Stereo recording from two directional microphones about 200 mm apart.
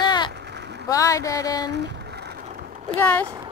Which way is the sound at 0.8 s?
15° left (ahead or behind).